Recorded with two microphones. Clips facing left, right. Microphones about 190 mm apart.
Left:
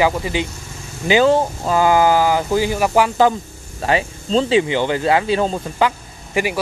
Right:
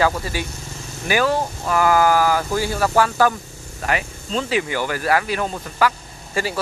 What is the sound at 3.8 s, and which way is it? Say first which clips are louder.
Speech: left 5 dB; 30° left (ahead or behind).